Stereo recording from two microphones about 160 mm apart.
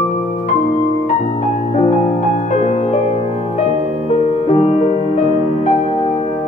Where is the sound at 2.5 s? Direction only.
50° left (ahead or behind).